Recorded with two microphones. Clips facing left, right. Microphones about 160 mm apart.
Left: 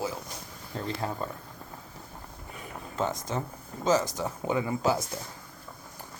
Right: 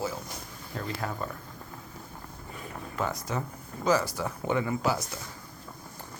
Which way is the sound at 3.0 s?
20° left (ahead or behind).